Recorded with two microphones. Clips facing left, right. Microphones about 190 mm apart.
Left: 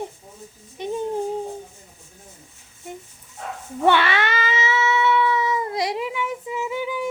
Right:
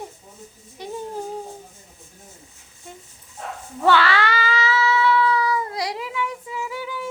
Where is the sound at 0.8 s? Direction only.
20° left (ahead or behind).